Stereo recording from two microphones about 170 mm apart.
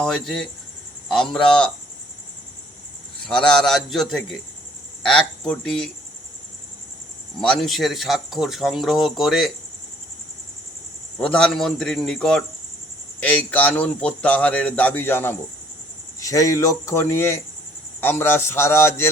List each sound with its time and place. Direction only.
0.0 s speech: centre (ahead or behind)
3.2 s speech: 5° left (ahead or behind)
7.4 s speech: centre (ahead or behind)
11.2 s a man's voice: 5° left (ahead or behind)